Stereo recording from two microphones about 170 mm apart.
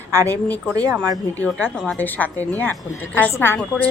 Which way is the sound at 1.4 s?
10° left (ahead or behind).